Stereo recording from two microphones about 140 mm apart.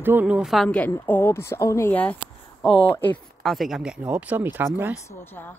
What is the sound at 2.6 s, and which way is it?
Speech, 40° left (ahead or behind).